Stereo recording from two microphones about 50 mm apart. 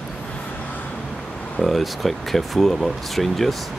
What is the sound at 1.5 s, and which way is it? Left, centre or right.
Speech, centre.